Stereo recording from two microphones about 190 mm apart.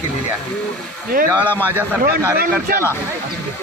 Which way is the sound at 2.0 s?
50° right (ahead or behind).